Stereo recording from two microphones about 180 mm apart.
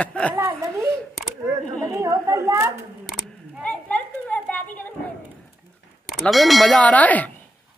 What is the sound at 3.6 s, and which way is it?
Children playing, 10° left (ahead or behind).